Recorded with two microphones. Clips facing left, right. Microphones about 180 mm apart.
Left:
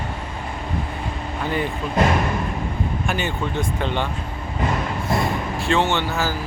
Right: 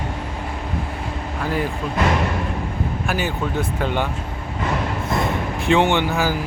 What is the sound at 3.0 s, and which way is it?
Speech, 5° right (ahead or behind).